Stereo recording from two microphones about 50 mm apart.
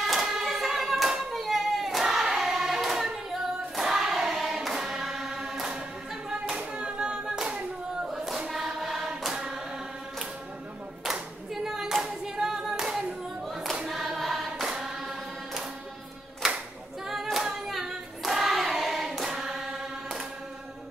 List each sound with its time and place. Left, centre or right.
0.0 s hands: centre
3.7 s choir: centre
6.4 s clapping: centre
8.0 s choir: centre
9.3 s hands: centre
11.6 s singing: centre
13.8 s choir: centre
17.1 s singing: centre